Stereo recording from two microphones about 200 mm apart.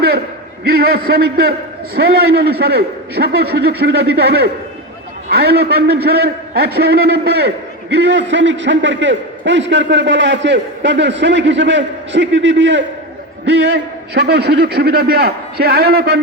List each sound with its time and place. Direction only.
0.6 s a man's voice: 50° right (ahead or behind)